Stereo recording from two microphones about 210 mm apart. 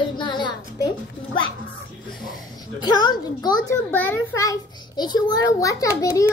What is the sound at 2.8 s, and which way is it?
A child's voice, 20° left (ahead or behind).